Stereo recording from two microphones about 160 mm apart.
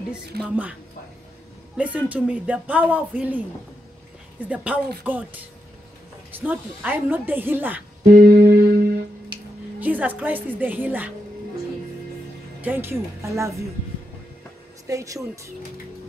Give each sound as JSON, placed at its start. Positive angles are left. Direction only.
{"t": 0.3, "sound": "a woman's voice", "side_deg": -75}
{"t": 1.8, "sound": "speech", "side_deg": -10}
{"t": 4.5, "sound": "speech", "side_deg": -10}
{"t": 8.2, "sound": "music", "side_deg": -70}
{"t": 9.3, "sound": "a sound", "side_deg": -30}
{"t": 9.8, "sound": "speech", "side_deg": -10}
{"t": 12.6, "sound": "speech", "side_deg": -15}
{"t": 14.9, "sound": "speech", "side_deg": -20}